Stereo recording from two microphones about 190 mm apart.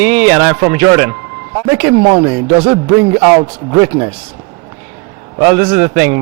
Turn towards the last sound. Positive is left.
turn(degrees=-10)  # may be behind; listen again after turning